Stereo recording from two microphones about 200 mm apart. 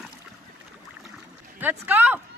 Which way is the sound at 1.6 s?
10° right (ahead or behind).